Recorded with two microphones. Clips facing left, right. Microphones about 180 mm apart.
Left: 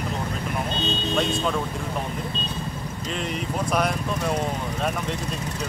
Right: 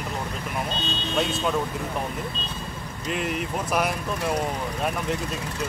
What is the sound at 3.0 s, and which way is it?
Speech, 5° right (ahead or behind).